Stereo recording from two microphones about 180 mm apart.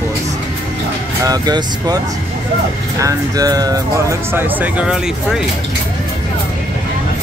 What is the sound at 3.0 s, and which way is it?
Speech, 20° right (ahead or behind).